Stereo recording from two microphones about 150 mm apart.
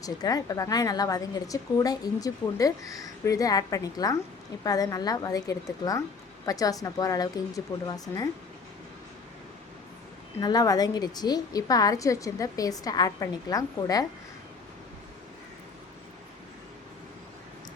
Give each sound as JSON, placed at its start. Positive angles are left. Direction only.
{"t": 0.0, "sound": "a woman's voice", "side_deg": 25}
{"t": 10.4, "sound": "a woman's voice", "side_deg": 25}